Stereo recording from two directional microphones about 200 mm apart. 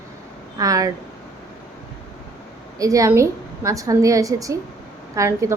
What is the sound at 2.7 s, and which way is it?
A woman's voice, 15° right (ahead or behind).